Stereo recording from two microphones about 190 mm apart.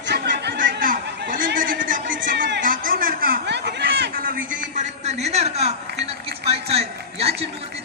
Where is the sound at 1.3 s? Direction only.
45° right (ahead or behind).